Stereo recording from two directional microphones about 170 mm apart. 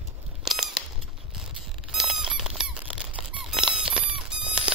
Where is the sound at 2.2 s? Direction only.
5° right (ahead or behind).